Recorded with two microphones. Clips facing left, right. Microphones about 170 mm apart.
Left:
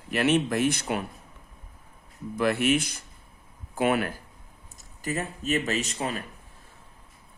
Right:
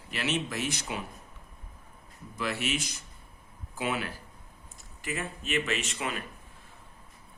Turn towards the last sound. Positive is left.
turn(degrees=35)  # may be behind; listen again after turning